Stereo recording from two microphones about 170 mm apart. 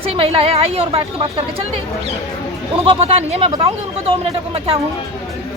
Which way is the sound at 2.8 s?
35° right (ahead or behind).